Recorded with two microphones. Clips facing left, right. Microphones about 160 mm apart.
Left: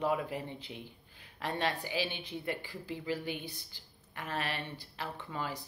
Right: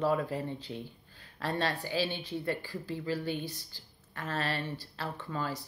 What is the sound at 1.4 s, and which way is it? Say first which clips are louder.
Speech: right 2 dB; 15° left (ahead or behind).